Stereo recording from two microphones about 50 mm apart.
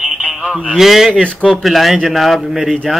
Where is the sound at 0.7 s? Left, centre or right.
Centre.